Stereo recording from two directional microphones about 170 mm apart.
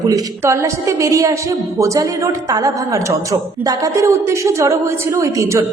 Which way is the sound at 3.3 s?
20° right (ahead or behind).